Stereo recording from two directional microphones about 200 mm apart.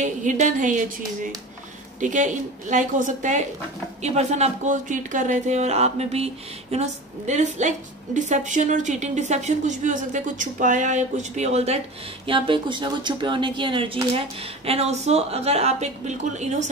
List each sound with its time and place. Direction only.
0.0 s speech: 40° right (ahead or behind)